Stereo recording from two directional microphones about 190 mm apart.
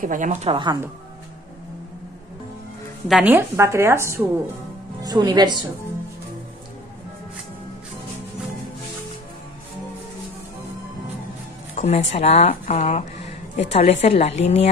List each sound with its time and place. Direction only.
0.0 s a woman's voice: 45° right (ahead or behind)
3.1 s a woman's voice: 5° right (ahead or behind); by 5.7 s 20° right (ahead or behind)
11.7 s speech: 35° left (ahead or behind)